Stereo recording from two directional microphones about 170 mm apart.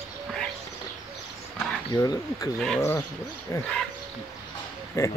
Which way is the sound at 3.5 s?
20° left (ahead or behind).